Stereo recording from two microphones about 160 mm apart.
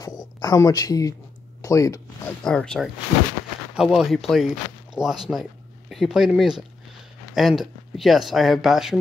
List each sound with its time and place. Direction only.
0.0 s speech: 25° left (ahead or behind)
2.4 s speech: 5° left (ahead or behind)